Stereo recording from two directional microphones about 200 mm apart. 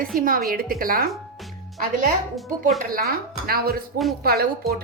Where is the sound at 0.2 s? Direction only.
45° right (ahead or behind).